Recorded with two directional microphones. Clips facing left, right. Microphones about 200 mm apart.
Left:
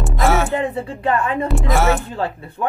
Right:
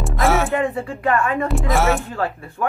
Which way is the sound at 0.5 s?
25° left (ahead or behind).